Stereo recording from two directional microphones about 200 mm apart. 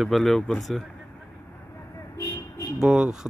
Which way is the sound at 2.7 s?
Centre (ahead or behind).